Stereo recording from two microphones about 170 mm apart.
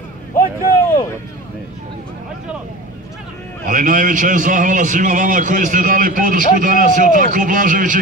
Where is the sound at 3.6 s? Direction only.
50° right (ahead or behind).